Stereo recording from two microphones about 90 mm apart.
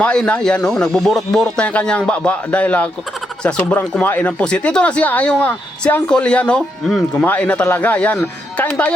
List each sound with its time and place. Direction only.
0.0 s speech: 10° left (ahead or behind)
6.8 s speech: centre (ahead or behind)
7.3 s speech: 15° left (ahead or behind)